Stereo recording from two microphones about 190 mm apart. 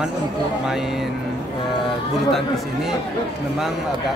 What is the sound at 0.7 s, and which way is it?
Speech, centre (ahead or behind).